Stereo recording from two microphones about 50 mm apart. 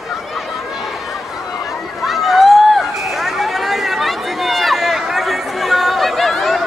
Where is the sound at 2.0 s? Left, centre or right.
Centre.